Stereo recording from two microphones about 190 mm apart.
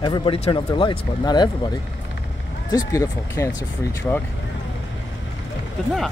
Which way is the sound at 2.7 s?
15° left (ahead or behind).